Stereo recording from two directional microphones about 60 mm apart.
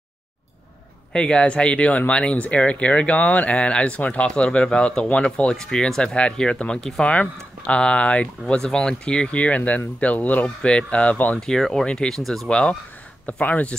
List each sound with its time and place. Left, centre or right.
1.1 s speech: centre
11.3 s speech: centre